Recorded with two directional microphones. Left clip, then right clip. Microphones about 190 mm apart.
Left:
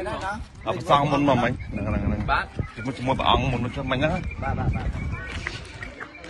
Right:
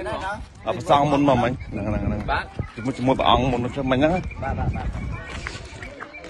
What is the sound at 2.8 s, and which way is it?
A man's voice, 30° right (ahead or behind).